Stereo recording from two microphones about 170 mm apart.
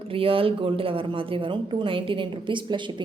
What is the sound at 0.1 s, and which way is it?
A woman's voice, 30° right (ahead or behind).